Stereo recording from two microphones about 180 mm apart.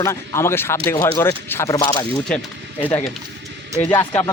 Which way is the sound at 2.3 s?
5° left (ahead or behind).